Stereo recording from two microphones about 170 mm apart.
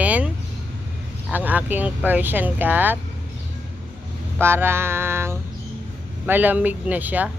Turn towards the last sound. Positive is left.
turn(degrees=-10)  # may be behind; listen again after turning